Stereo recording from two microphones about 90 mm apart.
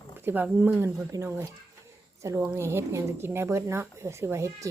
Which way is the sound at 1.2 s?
30° right (ahead or behind).